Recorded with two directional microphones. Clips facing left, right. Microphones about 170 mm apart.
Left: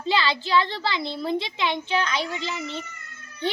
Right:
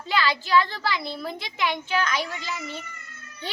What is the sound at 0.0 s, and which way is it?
A woman's voice, 25° left (ahead or behind).